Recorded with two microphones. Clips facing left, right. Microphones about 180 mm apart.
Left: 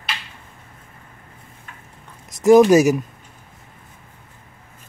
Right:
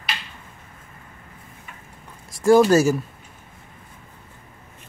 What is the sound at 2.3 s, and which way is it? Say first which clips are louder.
Speech: left 3 dB; 20° left (ahead or behind).